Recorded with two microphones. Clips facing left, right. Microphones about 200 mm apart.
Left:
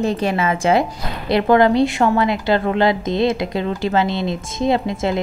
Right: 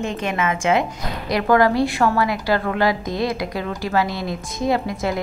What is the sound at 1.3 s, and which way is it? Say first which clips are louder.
A woman's voice: left 3 dB; 25° left (ahead or behind).